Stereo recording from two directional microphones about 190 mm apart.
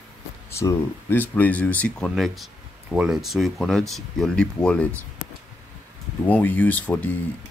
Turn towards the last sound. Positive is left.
turn(degrees=10)  # may be behind; listen again after turning